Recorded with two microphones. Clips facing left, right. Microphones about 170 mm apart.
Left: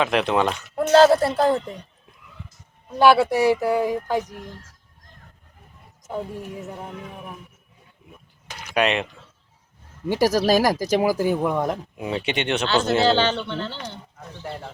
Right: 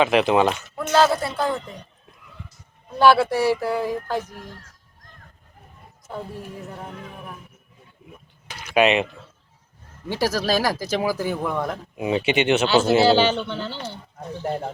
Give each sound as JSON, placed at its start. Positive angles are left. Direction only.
{"t": 0.0, "sound": "speech", "side_deg": 0}
{"t": 0.8, "sound": "speech", "side_deg": 35}
{"t": 3.0, "sound": "speech", "side_deg": 15}
{"t": 6.1, "sound": "speech", "side_deg": 15}
{"t": 8.7, "sound": "speech", "side_deg": -5}
{"t": 10.1, "sound": "speech", "side_deg": 15}
{"t": 11.9, "sound": "speech", "side_deg": -5}
{"t": 14.4, "sound": "speech", "side_deg": -45}